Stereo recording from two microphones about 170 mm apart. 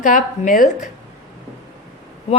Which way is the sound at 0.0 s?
50° left (ahead or behind).